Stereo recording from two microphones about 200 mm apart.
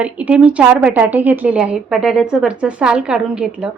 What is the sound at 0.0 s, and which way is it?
A woman's voice, 5° right (ahead or behind).